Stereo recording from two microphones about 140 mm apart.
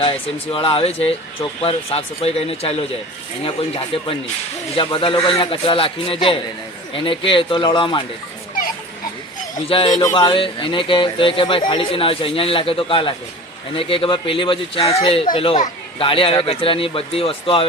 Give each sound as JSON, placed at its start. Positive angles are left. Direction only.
{"t": 0.0, "sound": "speech", "side_deg": 40}
{"t": 9.6, "sound": "speech", "side_deg": 40}
{"t": 9.9, "sound": "speech", "side_deg": 25}
{"t": 10.2, "sound": "speech", "side_deg": 35}